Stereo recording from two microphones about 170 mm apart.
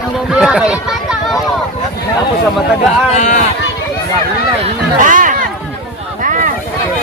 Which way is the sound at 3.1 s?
45° left (ahead or behind).